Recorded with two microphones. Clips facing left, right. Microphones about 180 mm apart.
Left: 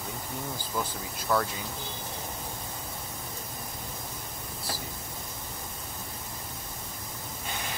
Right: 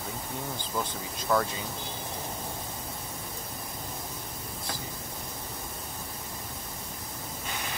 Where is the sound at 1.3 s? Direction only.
Centre (ahead or behind).